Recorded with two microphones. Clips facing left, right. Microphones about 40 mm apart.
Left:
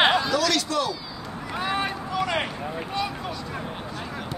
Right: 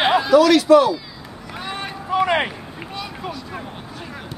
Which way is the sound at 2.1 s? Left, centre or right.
Right.